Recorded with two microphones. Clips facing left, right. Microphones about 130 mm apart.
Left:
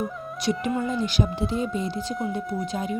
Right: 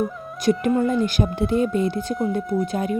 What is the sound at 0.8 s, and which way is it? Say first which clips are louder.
A woman's voice: right 5 dB; 50° right (ahead or behind).